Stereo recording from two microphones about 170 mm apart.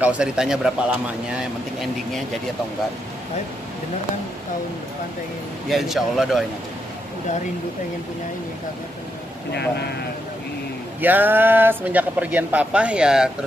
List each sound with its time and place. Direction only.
0.0 s a man's voice: 5° right (ahead or behind)
5.7 s a man's voice: centre (ahead or behind)
9.5 s speech: 75° left (ahead or behind)
11.0 s speech: 10° right (ahead or behind)